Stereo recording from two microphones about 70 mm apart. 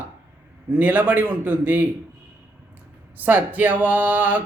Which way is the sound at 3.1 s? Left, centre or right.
Right.